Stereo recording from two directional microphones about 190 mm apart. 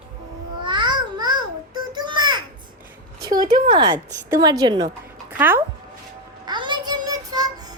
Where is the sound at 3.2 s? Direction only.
20° right (ahead or behind).